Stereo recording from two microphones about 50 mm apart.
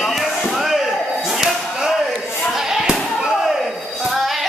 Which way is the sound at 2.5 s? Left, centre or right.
Centre.